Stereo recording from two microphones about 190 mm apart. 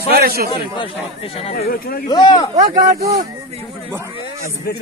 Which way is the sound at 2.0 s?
20° left (ahead or behind).